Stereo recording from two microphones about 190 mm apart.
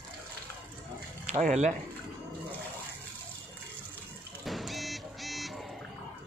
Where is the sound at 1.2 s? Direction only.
40° right (ahead or behind).